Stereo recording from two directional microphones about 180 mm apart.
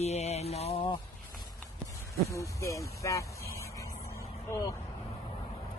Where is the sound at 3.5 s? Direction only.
15° left (ahead or behind).